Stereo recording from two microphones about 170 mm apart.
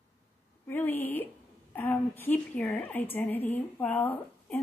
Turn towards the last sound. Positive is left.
turn(degrees=10)  # may be behind; listen again after turning